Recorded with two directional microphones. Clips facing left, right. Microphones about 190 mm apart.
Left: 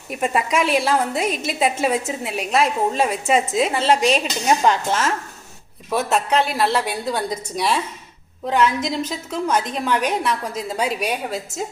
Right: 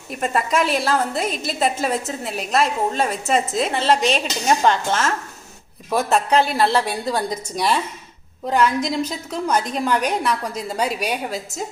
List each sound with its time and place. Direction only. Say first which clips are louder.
0.1 s a woman's voice: even; 5° left (ahead or behind)